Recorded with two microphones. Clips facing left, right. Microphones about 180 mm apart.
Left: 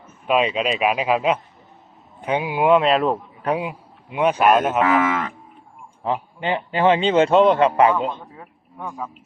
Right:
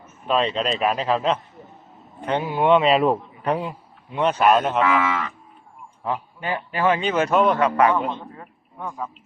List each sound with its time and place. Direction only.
0.3 s a man's voice: 10° left (ahead or behind)
3.5 s speech: 10° left (ahead or behind)
4.8 s cattle: 45° left (ahead or behind)
6.0 s speech: 20° left (ahead or behind)
8.4 s a sound: 5° left (ahead or behind)